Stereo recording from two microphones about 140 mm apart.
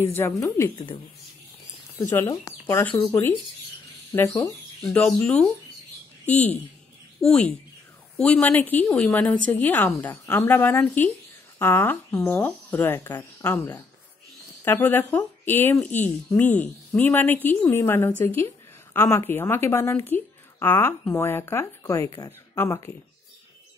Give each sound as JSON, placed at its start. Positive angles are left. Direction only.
{"t": 0.0, "sound": "speech", "side_deg": 20}
{"t": 2.0, "sound": "a woman's voice", "side_deg": 20}
{"t": 4.9, "sound": "a woman's voice", "side_deg": 10}
{"t": 7.2, "sound": "a woman's voice", "side_deg": 5}